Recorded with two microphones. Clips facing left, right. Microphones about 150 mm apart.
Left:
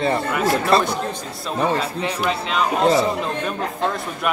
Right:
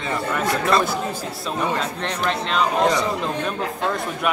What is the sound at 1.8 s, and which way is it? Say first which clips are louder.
Speech: left 2 dB; 5° left (ahead or behind).